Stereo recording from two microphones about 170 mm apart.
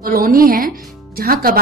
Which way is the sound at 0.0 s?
60° right (ahead or behind).